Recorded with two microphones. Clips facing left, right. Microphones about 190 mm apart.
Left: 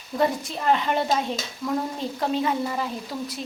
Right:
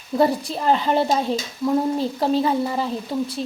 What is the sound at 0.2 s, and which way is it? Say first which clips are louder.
Speech: right 4 dB; 35° right (ahead or behind).